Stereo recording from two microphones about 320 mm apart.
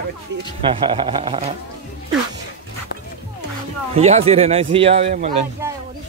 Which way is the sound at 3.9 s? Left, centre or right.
Centre.